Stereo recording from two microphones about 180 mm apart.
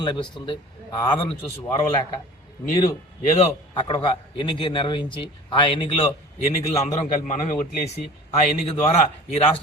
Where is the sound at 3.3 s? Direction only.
25° left (ahead or behind).